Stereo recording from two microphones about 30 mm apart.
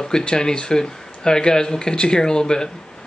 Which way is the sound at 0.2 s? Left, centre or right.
Left.